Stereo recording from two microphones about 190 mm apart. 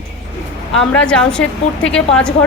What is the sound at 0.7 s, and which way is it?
A woman's voice, 5° left (ahead or behind).